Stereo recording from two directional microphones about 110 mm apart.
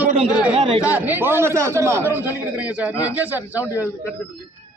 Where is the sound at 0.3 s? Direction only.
5° right (ahead or behind).